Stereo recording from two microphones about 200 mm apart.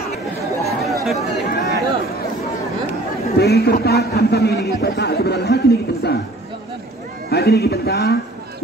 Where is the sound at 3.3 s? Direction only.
55° left (ahead or behind).